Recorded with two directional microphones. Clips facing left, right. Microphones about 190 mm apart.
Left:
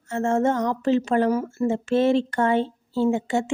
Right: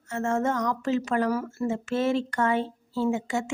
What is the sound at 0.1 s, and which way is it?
A woman's voice, 30° left (ahead or behind).